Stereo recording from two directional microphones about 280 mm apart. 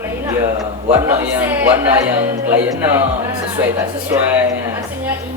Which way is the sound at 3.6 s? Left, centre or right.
Centre.